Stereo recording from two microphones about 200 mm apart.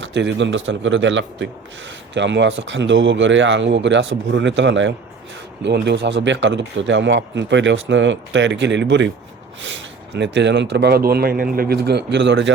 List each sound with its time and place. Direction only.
0.0 s speech: 60° right (ahead or behind)